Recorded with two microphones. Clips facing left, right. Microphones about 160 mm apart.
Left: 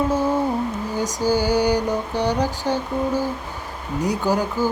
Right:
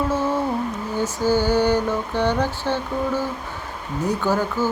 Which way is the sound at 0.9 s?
10° left (ahead or behind).